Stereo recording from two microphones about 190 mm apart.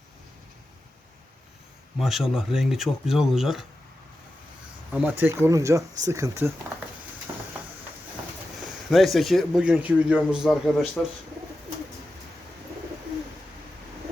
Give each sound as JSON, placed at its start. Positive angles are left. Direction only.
{"t": 2.0, "sound": "speech", "side_deg": 0}
{"t": 4.9, "sound": "speech", "side_deg": -10}
{"t": 8.9, "sound": "speech", "side_deg": 0}